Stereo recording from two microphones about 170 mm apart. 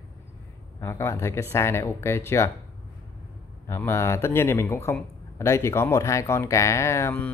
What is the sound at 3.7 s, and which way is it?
Speech, 15° left (ahead or behind).